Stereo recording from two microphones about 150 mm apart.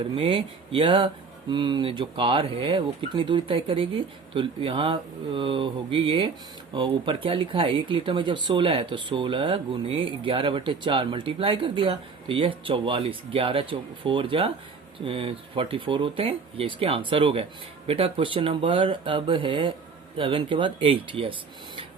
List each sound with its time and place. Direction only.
0.0 s speech: 35° right (ahead or behind)